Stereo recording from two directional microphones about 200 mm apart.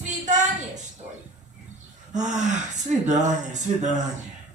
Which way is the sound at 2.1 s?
35° right (ahead or behind).